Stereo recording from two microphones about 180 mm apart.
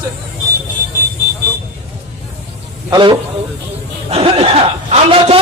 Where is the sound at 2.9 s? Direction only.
30° right (ahead or behind).